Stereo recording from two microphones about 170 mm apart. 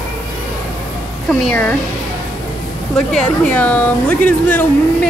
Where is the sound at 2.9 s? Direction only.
5° left (ahead or behind).